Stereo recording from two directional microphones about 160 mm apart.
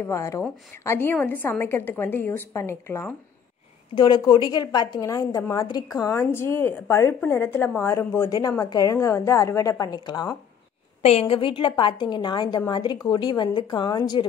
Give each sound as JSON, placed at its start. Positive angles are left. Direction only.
{"t": 0.0, "sound": "a woman's voice", "side_deg": 20}
{"t": 3.9, "sound": "a woman's voice", "side_deg": 30}
{"t": 11.0, "sound": "a woman's voice", "side_deg": 40}